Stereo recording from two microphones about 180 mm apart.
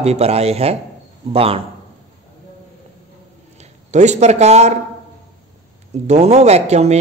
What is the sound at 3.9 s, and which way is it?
Speech, 40° right (ahead or behind).